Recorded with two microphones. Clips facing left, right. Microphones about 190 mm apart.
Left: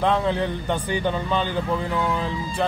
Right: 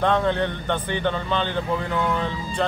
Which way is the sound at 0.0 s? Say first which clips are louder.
Right 1 dB; 5° left (ahead or behind).